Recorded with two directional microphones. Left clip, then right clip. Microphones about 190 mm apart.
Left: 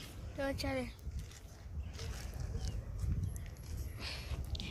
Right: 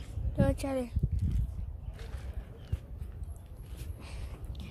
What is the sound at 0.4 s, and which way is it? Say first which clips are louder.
Speech: right 6 dB; 40° right (ahead or behind).